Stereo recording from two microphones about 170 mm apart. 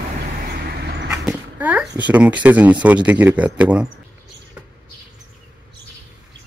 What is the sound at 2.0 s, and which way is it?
Speech, 10° right (ahead or behind).